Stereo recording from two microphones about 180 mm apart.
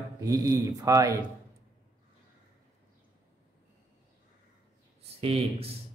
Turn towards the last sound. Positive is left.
turn(degrees=-35)  # may be behind; listen again after turning